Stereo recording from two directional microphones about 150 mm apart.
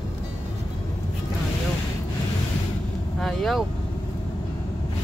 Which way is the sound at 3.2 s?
Centre (ahead or behind).